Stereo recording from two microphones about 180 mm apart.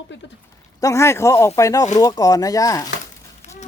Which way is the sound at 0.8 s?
15° left (ahead or behind).